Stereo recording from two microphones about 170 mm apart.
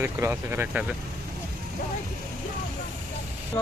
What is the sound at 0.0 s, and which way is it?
Speech, 15° right (ahead or behind).